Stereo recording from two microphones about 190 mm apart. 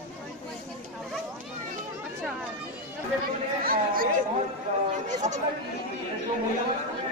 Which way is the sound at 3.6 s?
50° right (ahead or behind).